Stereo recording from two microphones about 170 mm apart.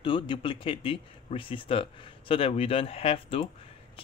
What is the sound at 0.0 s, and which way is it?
Speech, 30° left (ahead or behind).